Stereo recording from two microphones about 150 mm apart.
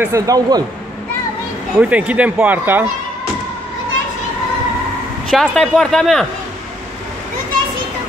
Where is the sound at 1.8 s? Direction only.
10° right (ahead or behind).